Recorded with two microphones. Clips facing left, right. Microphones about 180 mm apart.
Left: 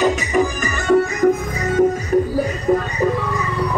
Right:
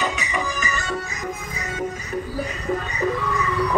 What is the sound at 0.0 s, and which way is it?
Music, 45° left (ahead or behind).